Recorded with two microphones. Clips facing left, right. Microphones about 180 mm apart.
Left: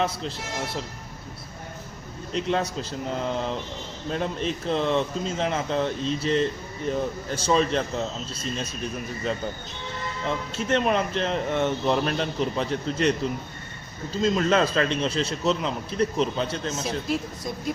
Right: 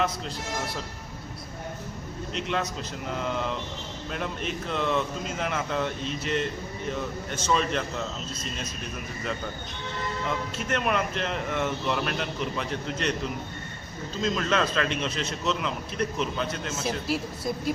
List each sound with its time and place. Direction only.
2.3 s speech: 35° left (ahead or behind)
10.2 s speech: 30° left (ahead or behind)
14.2 s speech: 30° left (ahead or behind)
16.8 s speech: 5° right (ahead or behind)